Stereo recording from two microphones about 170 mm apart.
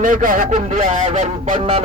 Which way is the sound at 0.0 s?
50° right (ahead or behind).